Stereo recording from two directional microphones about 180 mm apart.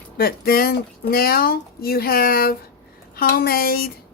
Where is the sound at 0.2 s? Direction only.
55° left (ahead or behind).